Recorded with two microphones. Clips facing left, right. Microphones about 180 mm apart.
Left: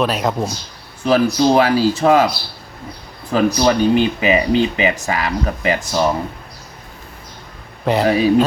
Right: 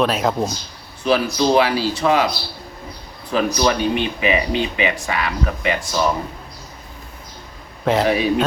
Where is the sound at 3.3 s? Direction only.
40° left (ahead or behind).